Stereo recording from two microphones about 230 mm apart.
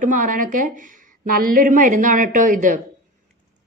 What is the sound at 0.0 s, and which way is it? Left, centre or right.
A woman's voice, right.